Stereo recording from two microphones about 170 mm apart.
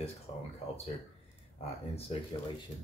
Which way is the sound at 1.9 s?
30° left (ahead or behind).